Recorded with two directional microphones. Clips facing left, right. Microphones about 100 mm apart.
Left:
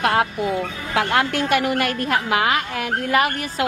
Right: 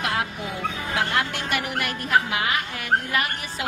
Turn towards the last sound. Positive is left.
turn(degrees=60)  # may be behind; listen again after turning